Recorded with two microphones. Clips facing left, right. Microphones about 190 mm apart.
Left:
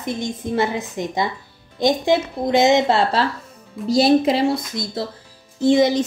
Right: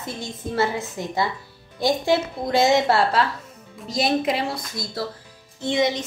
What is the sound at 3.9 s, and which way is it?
A woman's voice, 30° left (ahead or behind).